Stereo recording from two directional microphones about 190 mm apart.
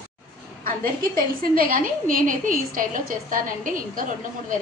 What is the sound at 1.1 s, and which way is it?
A woman's voice, 50° right (ahead or behind).